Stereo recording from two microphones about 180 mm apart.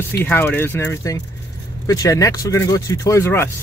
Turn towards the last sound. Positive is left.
turn(degrees=15)  # may be behind; listen again after turning